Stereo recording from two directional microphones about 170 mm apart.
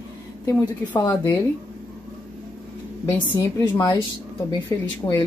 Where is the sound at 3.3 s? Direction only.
20° left (ahead or behind).